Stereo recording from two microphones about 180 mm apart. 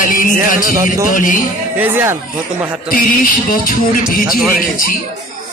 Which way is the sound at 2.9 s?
50° left (ahead or behind).